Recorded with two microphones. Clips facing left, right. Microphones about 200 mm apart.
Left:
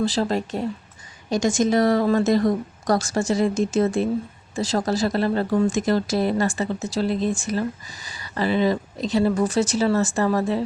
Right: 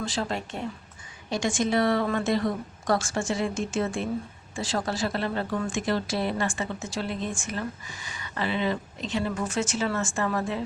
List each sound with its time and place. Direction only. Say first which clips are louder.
0.0 s speech: left 8 dB; 35° left (ahead or behind)